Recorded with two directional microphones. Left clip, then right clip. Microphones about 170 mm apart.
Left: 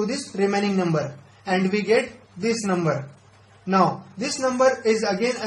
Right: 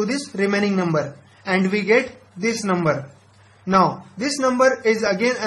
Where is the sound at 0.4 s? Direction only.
30° right (ahead or behind).